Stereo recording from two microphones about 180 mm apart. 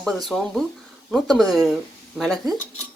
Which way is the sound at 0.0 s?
Centre (ahead or behind).